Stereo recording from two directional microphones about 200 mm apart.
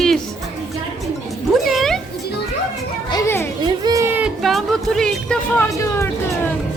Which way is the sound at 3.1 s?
15° left (ahead or behind).